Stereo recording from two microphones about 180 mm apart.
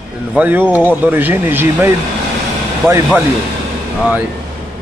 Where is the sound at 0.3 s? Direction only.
10° right (ahead or behind).